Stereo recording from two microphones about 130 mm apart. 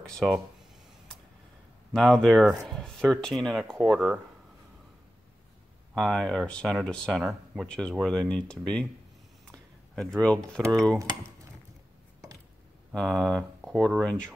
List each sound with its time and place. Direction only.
0.0 s speech: centre (ahead or behind)
2.0 s speech: 5° left (ahead or behind)
3.9 s speech: 10° right (ahead or behind)
5.9 s speech: 5° left (ahead or behind)
9.5 s a sound: 5° left (ahead or behind)
10.7 s speech: 5° left (ahead or behind)
11.0 s speech: 25° right (ahead or behind)
12.9 s speech: 5° left (ahead or behind)